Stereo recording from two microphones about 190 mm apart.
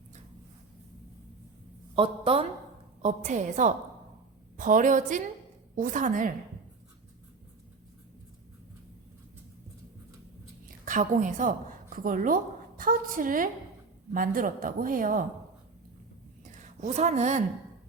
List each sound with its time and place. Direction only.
2.0 s a woman's voice: 30° right (ahead or behind)
10.7 s a woman's voice: 45° right (ahead or behind)
16.8 s a woman's voice: 35° right (ahead or behind)